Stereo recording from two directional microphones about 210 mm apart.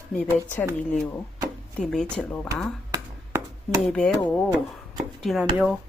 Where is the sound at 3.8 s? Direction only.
Centre (ahead or behind).